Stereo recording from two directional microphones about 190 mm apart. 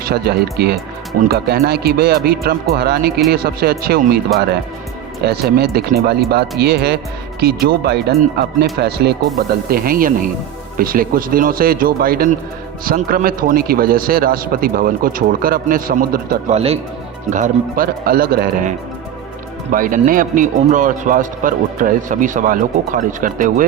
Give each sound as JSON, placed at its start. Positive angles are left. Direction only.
{"t": 0.0, "sound": "speech", "side_deg": -55}
{"t": 5.2, "sound": "speech", "side_deg": -55}
{"t": 16.5, "sound": "speech", "side_deg": -35}
{"t": 19.7, "sound": "speech", "side_deg": -45}